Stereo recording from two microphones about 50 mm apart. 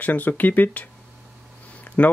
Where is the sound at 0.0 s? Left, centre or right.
Left.